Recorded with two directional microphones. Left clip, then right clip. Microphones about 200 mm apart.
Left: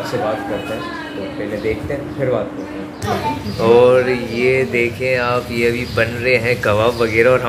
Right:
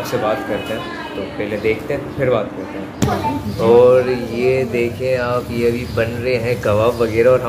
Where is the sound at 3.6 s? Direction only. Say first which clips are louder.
Even; centre (ahead or behind).